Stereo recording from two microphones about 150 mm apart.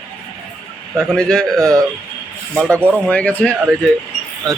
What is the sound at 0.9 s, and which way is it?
Speech, 5° left (ahead or behind).